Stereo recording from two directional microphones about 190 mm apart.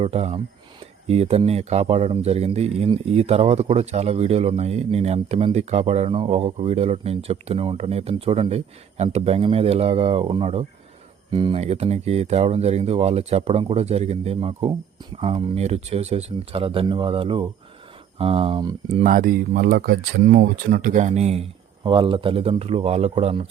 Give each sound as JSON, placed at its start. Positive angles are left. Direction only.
{"t": 0.0, "sound": "speech", "side_deg": -35}
{"t": 18.9, "sound": "speech", "side_deg": -45}